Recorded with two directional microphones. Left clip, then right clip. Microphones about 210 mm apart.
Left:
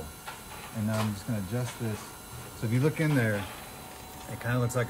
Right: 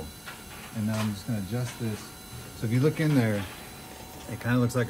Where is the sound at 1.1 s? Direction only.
5° left (ahead or behind).